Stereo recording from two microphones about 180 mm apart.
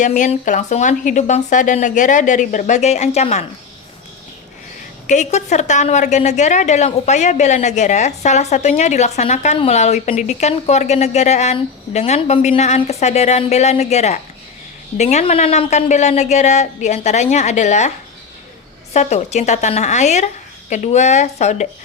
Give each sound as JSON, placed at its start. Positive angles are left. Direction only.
{"t": 0.0, "sound": "a woman's voice", "side_deg": 40}
{"t": 5.0, "sound": "a woman's voice", "side_deg": 40}
{"t": 18.9, "sound": "a woman's voice", "side_deg": 40}